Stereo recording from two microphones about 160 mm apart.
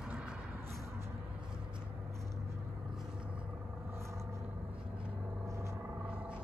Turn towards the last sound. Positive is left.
turn(degrees=-5)  # may be behind; listen again after turning